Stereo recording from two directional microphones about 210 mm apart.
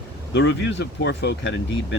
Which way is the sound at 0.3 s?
55° left (ahead or behind).